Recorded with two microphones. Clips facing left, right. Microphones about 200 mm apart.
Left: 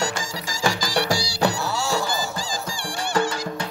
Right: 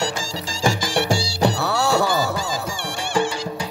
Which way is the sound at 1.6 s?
65° right (ahead or behind).